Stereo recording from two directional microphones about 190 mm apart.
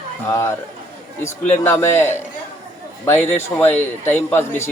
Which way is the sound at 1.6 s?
15° left (ahead or behind).